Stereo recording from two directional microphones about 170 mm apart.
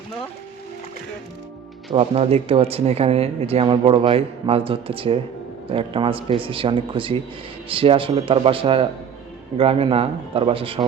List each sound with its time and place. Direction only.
1.9 s speech: 35° right (ahead or behind)